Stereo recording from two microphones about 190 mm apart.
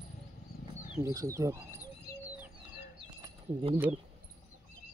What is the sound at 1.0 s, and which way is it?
Speech, 15° right (ahead or behind).